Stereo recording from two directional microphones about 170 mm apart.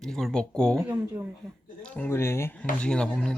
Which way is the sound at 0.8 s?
10° right (ahead or behind).